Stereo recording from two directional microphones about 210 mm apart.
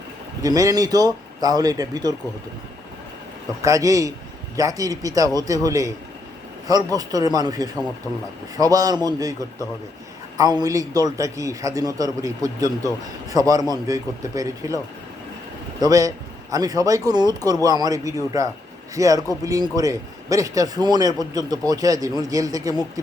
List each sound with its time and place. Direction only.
0.4 s a man's voice: 15° right (ahead or behind)
3.6 s a man's voice: 15° right (ahead or behind)
15.8 s a man's voice: 15° right (ahead or behind)